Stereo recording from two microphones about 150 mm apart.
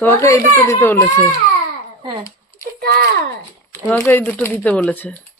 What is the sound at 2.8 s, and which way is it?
Speech, 90° right.